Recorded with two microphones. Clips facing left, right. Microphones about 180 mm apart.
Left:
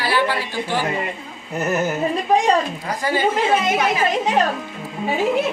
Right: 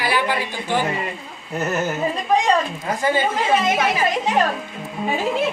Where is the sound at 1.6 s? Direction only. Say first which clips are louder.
Left 2 dB; 10° left (ahead or behind).